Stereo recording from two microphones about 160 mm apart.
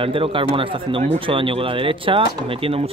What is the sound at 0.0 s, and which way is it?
Speech, 35° right (ahead or behind).